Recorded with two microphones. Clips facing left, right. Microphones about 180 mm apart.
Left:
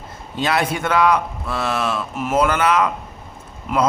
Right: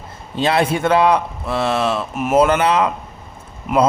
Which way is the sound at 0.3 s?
25° right (ahead or behind).